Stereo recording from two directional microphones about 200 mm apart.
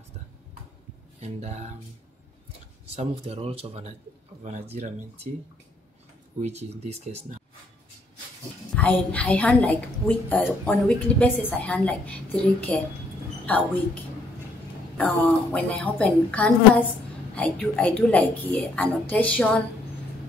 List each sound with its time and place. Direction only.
1.2 s speech: 35° right (ahead or behind)
2.9 s speech: 30° right (ahead or behind)
6.4 s speech: 35° right (ahead or behind)
8.7 s a woman's voice: 5° left (ahead or behind)
15.0 s a woman's voice: 5° left (ahead or behind)